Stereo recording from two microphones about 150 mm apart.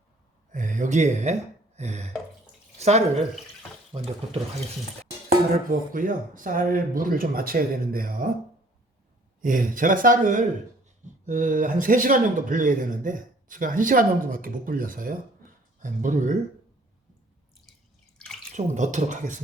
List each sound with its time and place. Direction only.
0.5 s speech: 55° right (ahead or behind)
3.9 s speech: 25° right (ahead or behind)
5.9 s speech: 65° right (ahead or behind)
9.4 s speech: 60° right (ahead or behind)
18.5 s speech: 55° right (ahead or behind)